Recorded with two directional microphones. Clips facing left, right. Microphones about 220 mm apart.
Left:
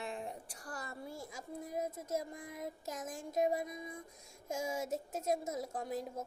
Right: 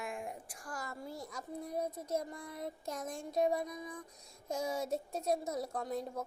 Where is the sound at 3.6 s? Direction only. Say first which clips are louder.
Right 1 dB; 20° left (ahead or behind).